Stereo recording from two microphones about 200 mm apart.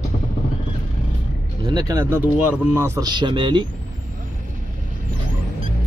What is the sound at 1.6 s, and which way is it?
Speech, 20° right (ahead or behind).